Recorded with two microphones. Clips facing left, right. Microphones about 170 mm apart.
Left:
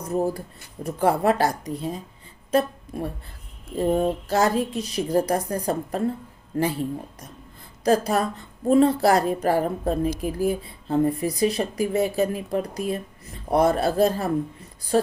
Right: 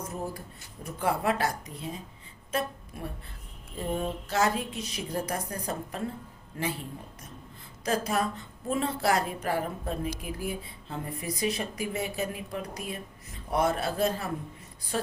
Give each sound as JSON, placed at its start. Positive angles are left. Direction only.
{"t": 0.0, "sound": "a woman's voice", "side_deg": 35}
{"t": 7.9, "sound": "a woman's voice", "side_deg": 35}